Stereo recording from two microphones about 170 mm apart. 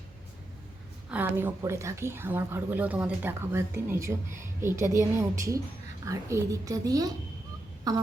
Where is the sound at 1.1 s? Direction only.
10° right (ahead or behind).